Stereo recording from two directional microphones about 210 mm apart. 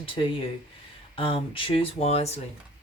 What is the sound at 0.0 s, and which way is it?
Speech, 25° left (ahead or behind).